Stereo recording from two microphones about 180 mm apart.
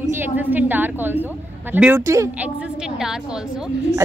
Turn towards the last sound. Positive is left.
turn(degrees=-5)  # may be behind; listen again after turning